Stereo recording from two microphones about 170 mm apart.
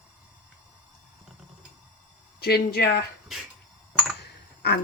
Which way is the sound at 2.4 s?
70° left (ahead or behind).